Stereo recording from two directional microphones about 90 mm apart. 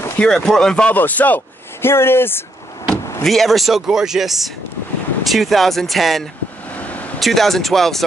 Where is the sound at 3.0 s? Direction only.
35° left (ahead or behind).